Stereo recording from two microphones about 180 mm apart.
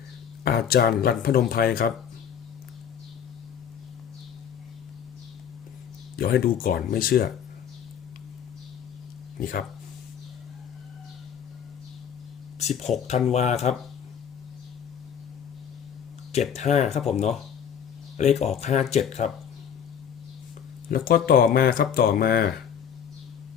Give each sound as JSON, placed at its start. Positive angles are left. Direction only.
{"t": 0.4, "sound": "speech", "side_deg": 60}
{"t": 6.1, "sound": "speech", "side_deg": 55}
{"t": 9.4, "sound": "speech", "side_deg": 55}
{"t": 12.5, "sound": "speech", "side_deg": 40}
{"t": 16.6, "sound": "speech", "side_deg": 40}
{"t": 20.9, "sound": "speech", "side_deg": 55}